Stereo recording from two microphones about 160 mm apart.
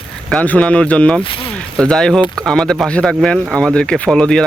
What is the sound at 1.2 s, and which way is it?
Speech, 35° left (ahead or behind).